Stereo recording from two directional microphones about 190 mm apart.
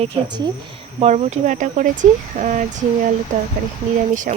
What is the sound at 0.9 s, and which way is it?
Speech, 35° right (ahead or behind).